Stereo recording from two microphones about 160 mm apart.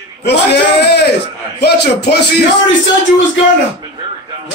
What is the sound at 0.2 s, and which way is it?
A man's voice, 90° left.